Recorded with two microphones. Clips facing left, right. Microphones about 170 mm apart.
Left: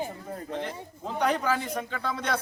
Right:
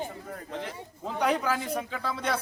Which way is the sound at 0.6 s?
5° right (ahead or behind).